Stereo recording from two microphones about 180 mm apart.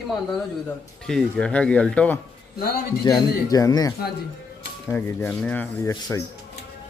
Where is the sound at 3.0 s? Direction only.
20° left (ahead or behind).